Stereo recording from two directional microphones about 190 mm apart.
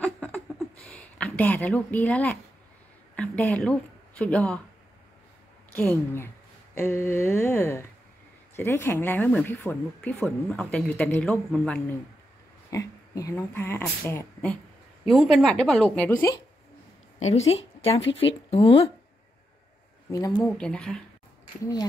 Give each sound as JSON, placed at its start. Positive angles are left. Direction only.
{"t": 0.0, "sound": "a sound", "side_deg": 5}
{"t": 3.2, "sound": "speech", "side_deg": 10}
{"t": 5.8, "sound": "speech", "side_deg": 10}
{"t": 12.7, "sound": "a woman's voice", "side_deg": 15}
{"t": 18.2, "sound": "speech", "side_deg": 30}
{"t": 20.1, "sound": "speech", "side_deg": 20}
{"t": 20.5, "sound": "a woman's voice", "side_deg": 5}